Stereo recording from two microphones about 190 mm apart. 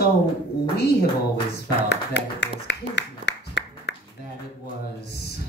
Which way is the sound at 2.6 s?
65° left (ahead or behind).